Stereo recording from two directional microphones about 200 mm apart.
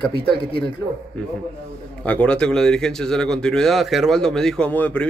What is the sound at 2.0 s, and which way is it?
A man's voice, 5° left (ahead or behind).